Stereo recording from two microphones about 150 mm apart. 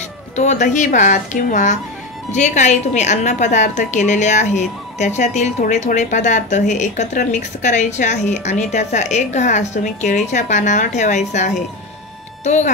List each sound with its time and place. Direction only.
0.4 s a woman's voice: 55° left (ahead or behind)